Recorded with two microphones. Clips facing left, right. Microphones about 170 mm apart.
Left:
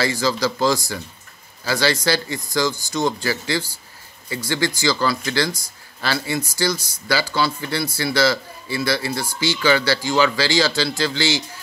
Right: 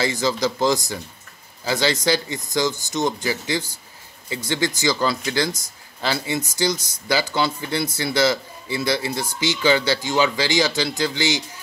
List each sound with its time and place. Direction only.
0.0 s speech: 20° right (ahead or behind)